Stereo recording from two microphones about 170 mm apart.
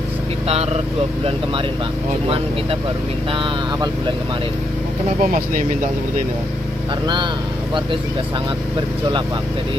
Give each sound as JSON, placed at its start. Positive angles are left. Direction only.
{"t": 2.2, "sound": "speech", "side_deg": -30}
{"t": 5.2, "sound": "speech", "side_deg": -45}